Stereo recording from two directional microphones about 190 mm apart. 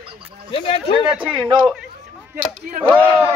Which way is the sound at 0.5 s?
30° left (ahead or behind).